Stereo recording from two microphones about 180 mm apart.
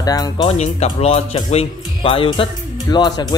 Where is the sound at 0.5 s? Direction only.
35° left (ahead or behind).